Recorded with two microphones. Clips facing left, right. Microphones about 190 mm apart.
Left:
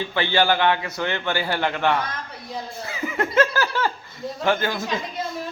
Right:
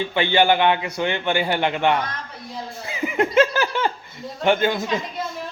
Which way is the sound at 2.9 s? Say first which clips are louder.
Right 4 dB; 20° right (ahead or behind).